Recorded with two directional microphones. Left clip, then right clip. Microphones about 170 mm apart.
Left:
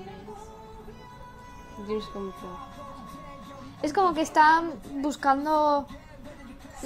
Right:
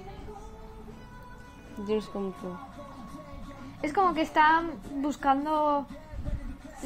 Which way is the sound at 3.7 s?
15° left (ahead or behind).